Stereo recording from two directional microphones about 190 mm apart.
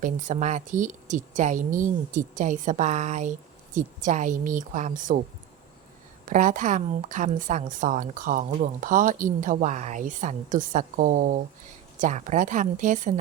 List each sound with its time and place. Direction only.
0.0 s a woman's voice: 40° right (ahead or behind)
6.2 s a woman's voice: 40° right (ahead or behind)